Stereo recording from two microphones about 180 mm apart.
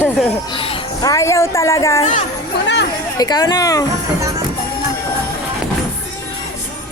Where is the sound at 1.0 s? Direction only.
15° left (ahead or behind).